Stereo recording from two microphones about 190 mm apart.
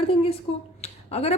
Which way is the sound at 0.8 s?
35° left (ahead or behind).